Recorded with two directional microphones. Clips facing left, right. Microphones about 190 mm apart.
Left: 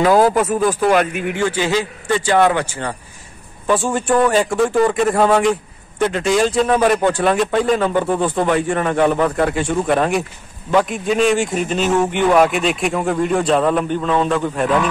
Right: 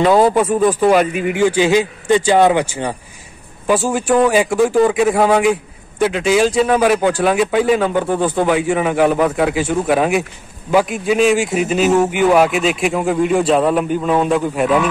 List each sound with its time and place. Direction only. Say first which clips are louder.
0.0 s a man's voice: right 1 dB; centre (ahead or behind)
1.4 s a man's voice: right 6 dB; 15° right (ahead or behind)